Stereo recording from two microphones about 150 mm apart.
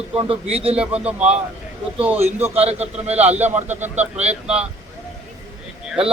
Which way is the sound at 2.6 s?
45° right (ahead or behind).